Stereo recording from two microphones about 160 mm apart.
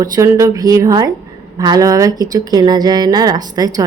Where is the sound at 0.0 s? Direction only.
20° right (ahead or behind).